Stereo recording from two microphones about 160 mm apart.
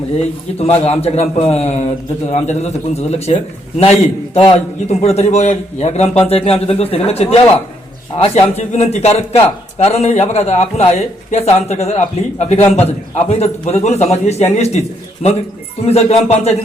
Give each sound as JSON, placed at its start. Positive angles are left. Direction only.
{"t": 0.7, "sound": "a man's voice", "side_deg": 40}